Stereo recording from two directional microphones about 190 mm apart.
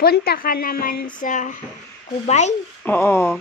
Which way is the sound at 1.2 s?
40° left (ahead or behind).